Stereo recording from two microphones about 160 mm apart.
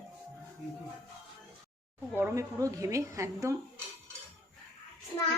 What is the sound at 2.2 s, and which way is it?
A woman's voice, 20° right (ahead or behind).